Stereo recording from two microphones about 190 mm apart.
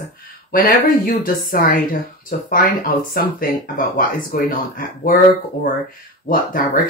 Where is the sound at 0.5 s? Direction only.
50° left (ahead or behind).